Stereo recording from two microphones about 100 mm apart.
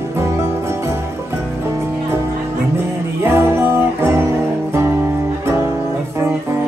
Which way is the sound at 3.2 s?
25° right (ahead or behind).